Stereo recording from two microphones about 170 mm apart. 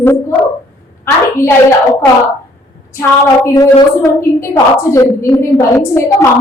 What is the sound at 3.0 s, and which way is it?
A woman's voice, 15° left (ahead or behind).